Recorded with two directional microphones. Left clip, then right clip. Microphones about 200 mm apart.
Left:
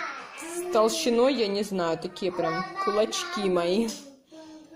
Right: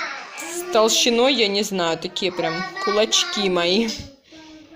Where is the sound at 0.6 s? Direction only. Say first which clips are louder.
Right 6 dB; 5° left (ahead or behind).